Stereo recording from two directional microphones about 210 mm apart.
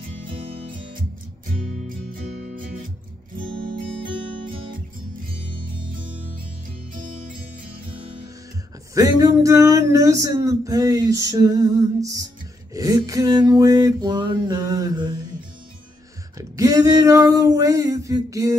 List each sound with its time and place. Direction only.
2.5 s music: 40° right (ahead or behind)
8.9 s speech: 15° right (ahead or behind)
16.3 s speech: 15° right (ahead or behind)